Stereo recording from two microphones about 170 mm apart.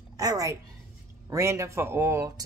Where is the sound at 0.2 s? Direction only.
20° right (ahead or behind).